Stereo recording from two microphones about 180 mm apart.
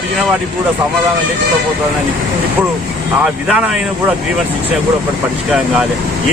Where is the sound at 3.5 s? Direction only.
5° right (ahead or behind).